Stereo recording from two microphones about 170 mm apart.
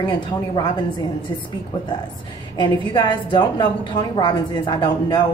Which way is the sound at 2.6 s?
25° left (ahead or behind).